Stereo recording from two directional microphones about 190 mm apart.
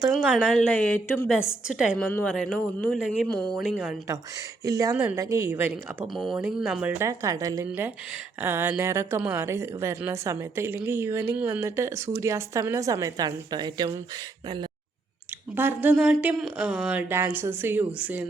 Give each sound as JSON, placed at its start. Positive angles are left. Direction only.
{"t": 0.1, "sound": "speech", "side_deg": 0}
{"t": 1.6, "sound": "speech", "side_deg": -5}
{"t": 4.6, "sound": "a woman's voice", "side_deg": -15}
{"t": 7.0, "sound": "a woman's voice", "side_deg": -15}
{"t": 15.5, "sound": "a woman's voice", "side_deg": -10}